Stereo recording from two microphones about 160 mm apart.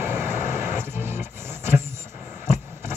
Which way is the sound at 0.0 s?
15° right (ahead or behind).